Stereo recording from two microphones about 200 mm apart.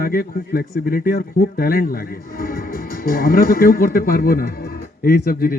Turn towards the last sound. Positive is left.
turn(degrees=45)  # may be behind; listen again after turning